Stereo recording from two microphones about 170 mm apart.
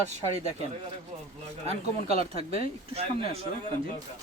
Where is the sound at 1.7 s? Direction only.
35° right (ahead or behind).